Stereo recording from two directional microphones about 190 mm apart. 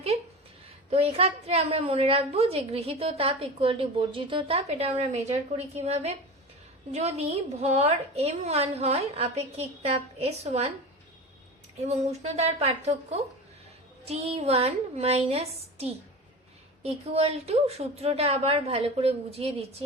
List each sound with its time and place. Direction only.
0.9 s a woman's voice: 30° right (ahead or behind)
11.9 s a woman's voice: 35° right (ahead or behind)